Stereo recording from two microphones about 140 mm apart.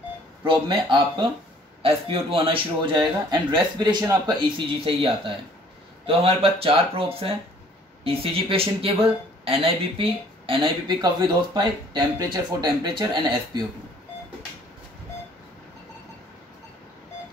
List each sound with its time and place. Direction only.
0.5 s speech: 35° right (ahead or behind)